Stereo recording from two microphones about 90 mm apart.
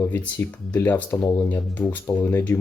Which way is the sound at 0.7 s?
20° left (ahead or behind).